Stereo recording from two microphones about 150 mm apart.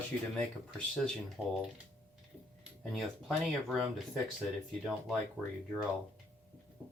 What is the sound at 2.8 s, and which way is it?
Speech, centre (ahead or behind).